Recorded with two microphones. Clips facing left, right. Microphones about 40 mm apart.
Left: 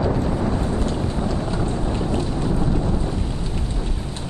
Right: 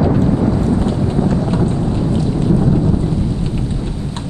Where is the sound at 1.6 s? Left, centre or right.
Centre.